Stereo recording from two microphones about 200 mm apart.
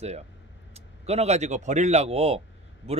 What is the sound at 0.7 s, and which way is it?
A man's voice, 30° right (ahead or behind).